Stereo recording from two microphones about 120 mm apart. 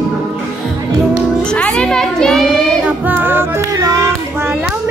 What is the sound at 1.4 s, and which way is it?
Music, 10° left (ahead or behind).